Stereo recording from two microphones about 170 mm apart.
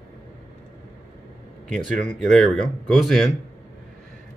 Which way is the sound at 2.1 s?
Centre (ahead or behind).